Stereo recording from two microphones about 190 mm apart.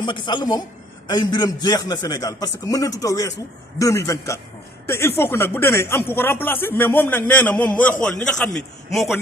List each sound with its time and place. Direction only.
0.0 s a man's voice: 25° left (ahead or behind); by 9.1 s centre (ahead or behind)